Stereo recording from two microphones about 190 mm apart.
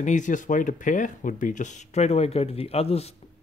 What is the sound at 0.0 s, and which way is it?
Speech, 40° left (ahead or behind).